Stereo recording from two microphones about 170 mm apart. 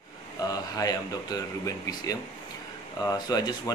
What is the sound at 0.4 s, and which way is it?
Speech, 20° left (ahead or behind).